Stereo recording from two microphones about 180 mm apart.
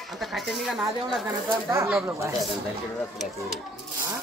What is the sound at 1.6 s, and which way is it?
Speech, 15° right (ahead or behind).